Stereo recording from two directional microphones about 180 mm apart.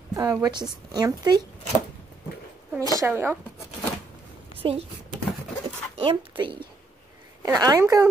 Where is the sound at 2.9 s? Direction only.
15° right (ahead or behind).